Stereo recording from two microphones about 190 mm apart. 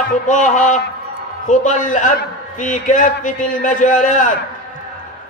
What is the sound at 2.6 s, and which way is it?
A man's voice, 40° left (ahead or behind).